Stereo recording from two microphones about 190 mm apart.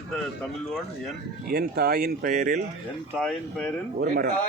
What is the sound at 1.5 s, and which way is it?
Speech, 55° right (ahead or behind).